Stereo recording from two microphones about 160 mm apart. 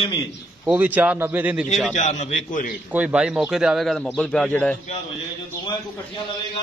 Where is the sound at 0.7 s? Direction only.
10° right (ahead or behind).